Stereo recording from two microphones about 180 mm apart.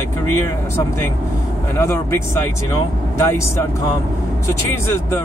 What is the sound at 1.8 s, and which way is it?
Speech, 15° left (ahead or behind).